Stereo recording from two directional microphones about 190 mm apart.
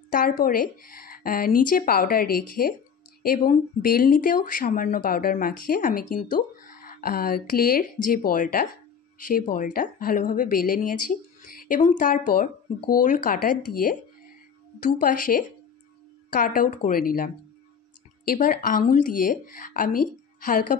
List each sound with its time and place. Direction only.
0.1 s speech: 45° left (ahead or behind)
15.0 s speech: 45° left (ahead or behind)